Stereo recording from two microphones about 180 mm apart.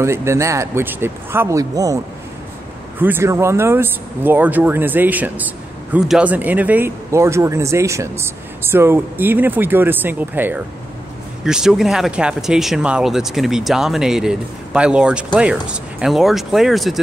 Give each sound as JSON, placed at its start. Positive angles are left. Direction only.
{"t": 0.0, "sound": "speech", "side_deg": -15}
{"t": 3.0, "sound": "speech", "side_deg": -10}